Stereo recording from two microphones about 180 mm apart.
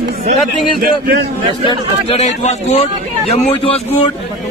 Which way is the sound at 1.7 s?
35° left (ahead or behind).